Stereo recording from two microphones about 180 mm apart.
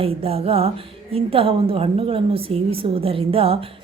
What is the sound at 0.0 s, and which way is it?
A woman's voice, 30° right (ahead or behind).